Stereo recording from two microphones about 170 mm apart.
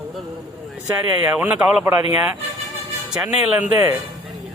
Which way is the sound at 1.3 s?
10° right (ahead or behind).